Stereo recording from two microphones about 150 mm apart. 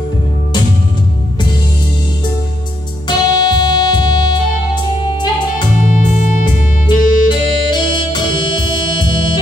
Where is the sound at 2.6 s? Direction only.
25° left (ahead or behind).